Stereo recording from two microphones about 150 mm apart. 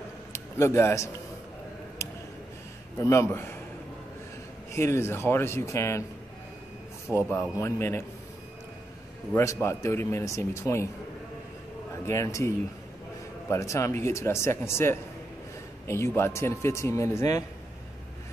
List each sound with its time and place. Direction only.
0.3 s a man's voice: 15° left (ahead or behind)
3.0 s speech: 20° left (ahead or behind)
4.7 s speech: 15° left (ahead or behind)
7.1 s speech: 15° left (ahead or behind)
9.3 s speech: 15° left (ahead or behind)
12.1 s speech: 20° left (ahead or behind)